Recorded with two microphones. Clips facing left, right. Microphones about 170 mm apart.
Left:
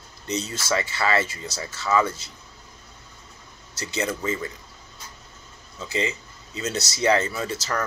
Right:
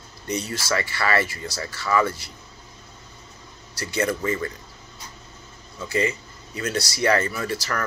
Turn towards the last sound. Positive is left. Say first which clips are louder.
# even
turn(degrees=20)  # may be behind; listen again after turning